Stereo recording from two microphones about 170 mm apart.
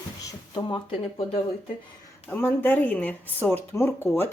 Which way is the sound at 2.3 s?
10° left (ahead or behind).